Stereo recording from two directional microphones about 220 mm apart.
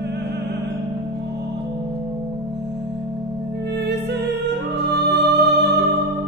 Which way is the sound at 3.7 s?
50° right (ahead or behind).